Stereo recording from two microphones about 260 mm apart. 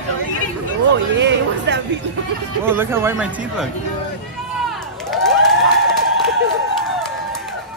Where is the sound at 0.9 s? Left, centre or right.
Right.